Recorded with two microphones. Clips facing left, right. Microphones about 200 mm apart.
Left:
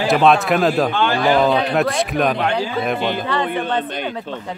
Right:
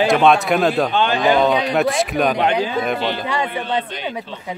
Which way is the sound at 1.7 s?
Centre (ahead or behind).